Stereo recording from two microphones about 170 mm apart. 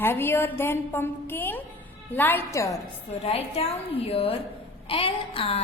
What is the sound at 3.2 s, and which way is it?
A woman's voice, 35° left (ahead or behind).